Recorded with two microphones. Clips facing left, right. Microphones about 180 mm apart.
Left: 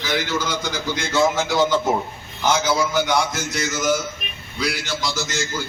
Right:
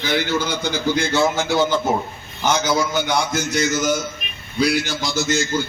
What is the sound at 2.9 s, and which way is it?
A man's voice, 30° right (ahead or behind).